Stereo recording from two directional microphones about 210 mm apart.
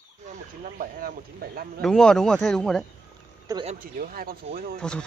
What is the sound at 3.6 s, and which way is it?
Speech, 40° right (ahead or behind).